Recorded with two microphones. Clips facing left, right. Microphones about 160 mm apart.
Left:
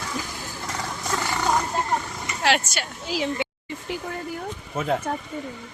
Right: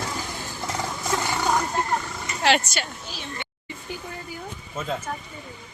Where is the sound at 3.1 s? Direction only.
90° left.